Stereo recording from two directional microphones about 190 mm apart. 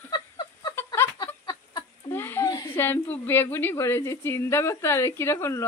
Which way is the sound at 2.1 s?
10° left (ahead or behind).